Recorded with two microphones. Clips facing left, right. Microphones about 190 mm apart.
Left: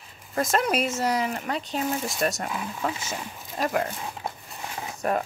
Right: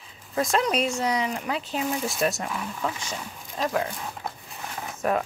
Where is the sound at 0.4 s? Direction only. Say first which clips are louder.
Even; centre (ahead or behind).